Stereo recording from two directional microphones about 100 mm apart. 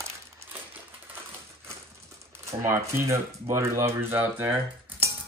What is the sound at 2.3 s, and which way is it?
Speech, 25° right (ahead or behind).